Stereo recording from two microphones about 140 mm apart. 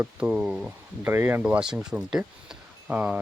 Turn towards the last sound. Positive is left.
turn(degrees=-10)  # may be behind; listen again after turning